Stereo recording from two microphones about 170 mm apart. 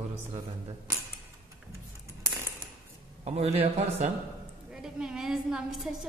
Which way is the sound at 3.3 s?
35° right (ahead or behind).